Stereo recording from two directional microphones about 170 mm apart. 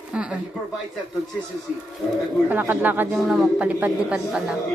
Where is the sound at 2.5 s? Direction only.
10° right (ahead or behind).